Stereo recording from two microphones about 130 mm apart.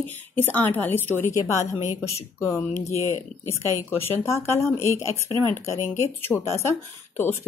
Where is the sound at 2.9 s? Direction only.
60° left (ahead or behind).